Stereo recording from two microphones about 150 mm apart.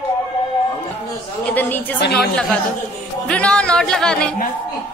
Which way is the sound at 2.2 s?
Centre (ahead or behind).